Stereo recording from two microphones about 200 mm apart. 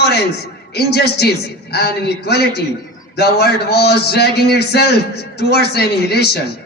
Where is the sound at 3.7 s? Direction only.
55° left (ahead or behind).